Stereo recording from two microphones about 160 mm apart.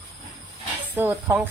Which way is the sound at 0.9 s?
15° right (ahead or behind).